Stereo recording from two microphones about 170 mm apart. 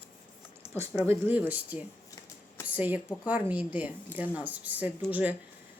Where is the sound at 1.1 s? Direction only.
10° right (ahead or behind).